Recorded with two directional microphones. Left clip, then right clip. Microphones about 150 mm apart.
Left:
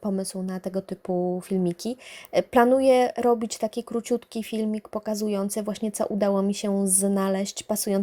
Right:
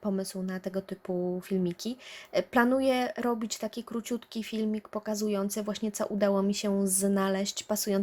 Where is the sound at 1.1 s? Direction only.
10° left (ahead or behind).